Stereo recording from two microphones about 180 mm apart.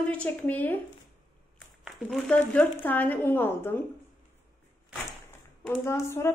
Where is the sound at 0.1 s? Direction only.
5° left (ahead or behind).